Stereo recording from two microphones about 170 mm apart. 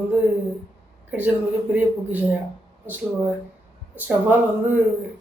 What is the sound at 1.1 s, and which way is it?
A man's voice, 10° right (ahead or behind).